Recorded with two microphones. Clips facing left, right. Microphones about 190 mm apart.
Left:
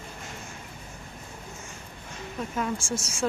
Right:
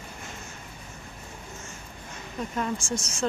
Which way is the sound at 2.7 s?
25° left (ahead or behind).